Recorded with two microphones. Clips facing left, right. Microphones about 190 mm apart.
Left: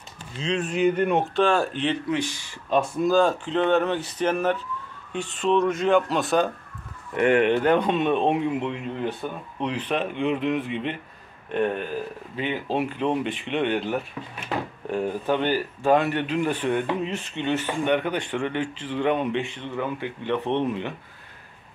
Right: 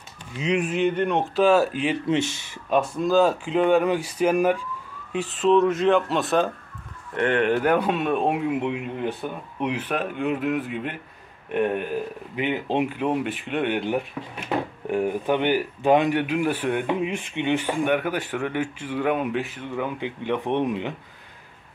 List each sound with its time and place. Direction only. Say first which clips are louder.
0.4 s speech: right 3 dB; 15° right (ahead or behind)
0.7 s speech: left 1 dB; centre (ahead or behind)
2.0 s speech: right 3 dB; 25° right (ahead or behind)
2.7 s speech: even; centre (ahead or behind)
7.5 s speech: left 1 dB; 5° right (ahead or behind)